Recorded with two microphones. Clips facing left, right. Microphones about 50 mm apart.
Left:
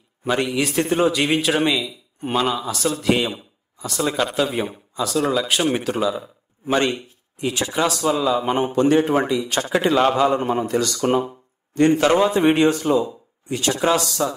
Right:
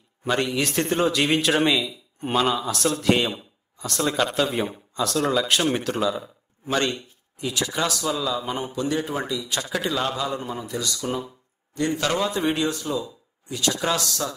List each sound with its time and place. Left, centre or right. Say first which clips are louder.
0.2 s a man's voice: left 3 dB; centre
6.7 s a man's voice: left 4 dB; centre
7.3 s a man's voice: left 4 dB; left
12.0 s speech: left 7 dB; left